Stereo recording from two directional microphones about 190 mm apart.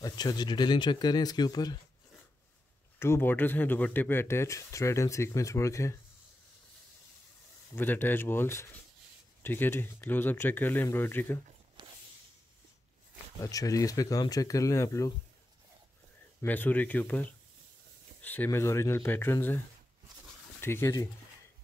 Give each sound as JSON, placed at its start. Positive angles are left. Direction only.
{"t": 0.0, "sound": "speech", "side_deg": 20}
{"t": 3.0, "sound": "speech", "side_deg": 10}
{"t": 7.7, "sound": "speech", "side_deg": 10}
{"t": 11.8, "sound": "a sound", "side_deg": -25}
{"t": 13.4, "sound": "speech", "side_deg": 20}
{"t": 16.3, "sound": "speech", "side_deg": 10}
{"t": 20.6, "sound": "speech", "side_deg": 10}